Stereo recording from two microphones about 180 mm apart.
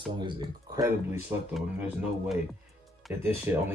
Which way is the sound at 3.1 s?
10° right (ahead or behind).